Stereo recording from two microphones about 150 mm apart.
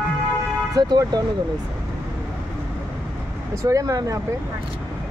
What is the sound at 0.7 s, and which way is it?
Speech, 30° right (ahead or behind).